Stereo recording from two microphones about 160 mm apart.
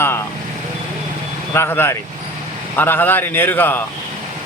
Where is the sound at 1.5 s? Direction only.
15° left (ahead or behind).